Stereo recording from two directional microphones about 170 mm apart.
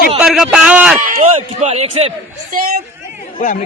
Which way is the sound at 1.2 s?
40° right (ahead or behind).